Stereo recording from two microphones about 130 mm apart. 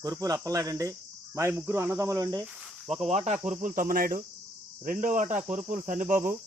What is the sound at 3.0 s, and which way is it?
Cricket, 55° right (ahead or behind).